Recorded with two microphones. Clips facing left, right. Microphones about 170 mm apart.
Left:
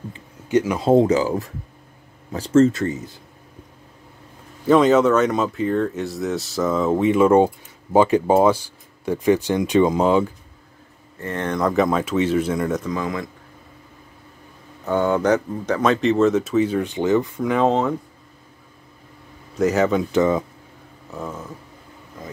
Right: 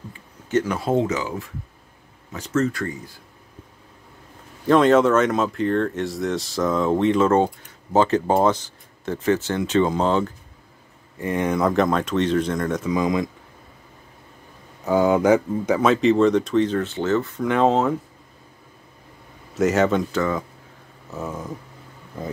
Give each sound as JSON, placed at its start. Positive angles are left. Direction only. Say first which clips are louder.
{"t": 0.5, "sound": "speech", "louder": "left 3 dB", "side_deg": 10}
{"t": 0.8, "sound": "speech", "louder": "left 6 dB", "side_deg": 30}
{"t": 4.6, "sound": "speech", "louder": "left 1 dB", "side_deg": 0}
{"t": 11.1, "sound": "speech", "louder": "right 2 dB", "side_deg": -15}
{"t": 12.8, "sound": "speech", "louder": "right 4 dB", "side_deg": -15}
{"t": 14.9, "sound": "speech", "louder": "right 2 dB", "side_deg": -10}
{"t": 17.4, "sound": "speech", "louder": "even", "side_deg": 0}
{"t": 19.5, "sound": "speech", "louder": "even", "side_deg": 0}
{"t": 20.1, "sound": "speech", "louder": "left 5 dB", "side_deg": 20}
{"t": 21.1, "sound": "speech", "louder": "right 1 dB", "side_deg": -10}